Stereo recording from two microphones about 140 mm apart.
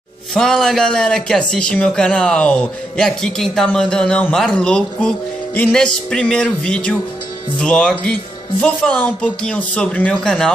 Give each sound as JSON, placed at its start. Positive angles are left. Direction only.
{"t": 0.3, "sound": "a man's voice", "side_deg": 5}